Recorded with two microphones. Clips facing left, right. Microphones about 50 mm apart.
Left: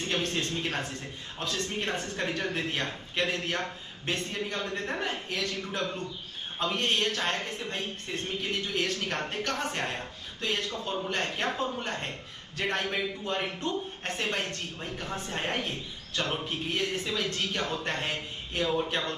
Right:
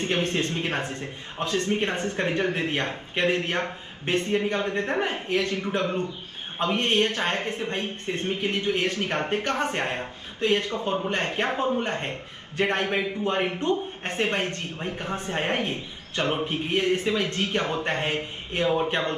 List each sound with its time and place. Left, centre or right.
0.0 s speech: right